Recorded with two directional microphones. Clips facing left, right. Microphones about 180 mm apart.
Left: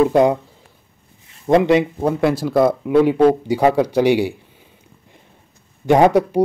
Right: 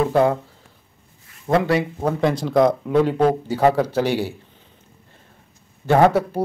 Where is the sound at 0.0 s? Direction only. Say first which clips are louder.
Left 4 dB; 15° left (ahead or behind).